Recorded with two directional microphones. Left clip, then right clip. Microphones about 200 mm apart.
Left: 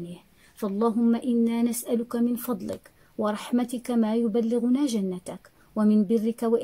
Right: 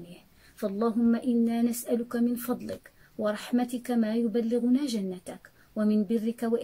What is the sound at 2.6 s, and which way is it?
Speech, 20° left (ahead or behind).